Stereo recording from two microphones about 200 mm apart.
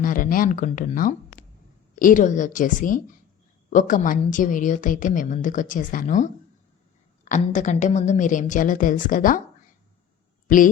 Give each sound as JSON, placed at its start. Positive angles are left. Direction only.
{"t": 0.0, "sound": "a woman's voice", "side_deg": 45}